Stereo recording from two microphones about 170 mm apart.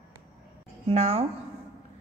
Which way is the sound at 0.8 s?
40° right (ahead or behind).